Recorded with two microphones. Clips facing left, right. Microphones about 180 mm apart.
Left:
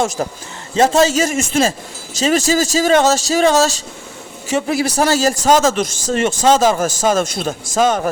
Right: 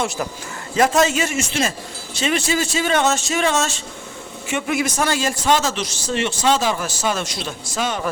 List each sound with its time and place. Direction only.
0.2 s speech: 35° left (ahead or behind)